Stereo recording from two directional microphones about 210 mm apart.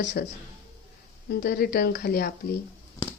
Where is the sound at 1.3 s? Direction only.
50° left (ahead or behind).